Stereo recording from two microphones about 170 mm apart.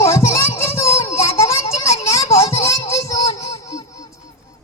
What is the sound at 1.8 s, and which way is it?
Children playing, 15° left (ahead or behind).